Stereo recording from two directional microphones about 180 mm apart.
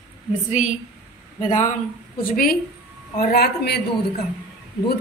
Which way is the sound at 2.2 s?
55° left (ahead or behind).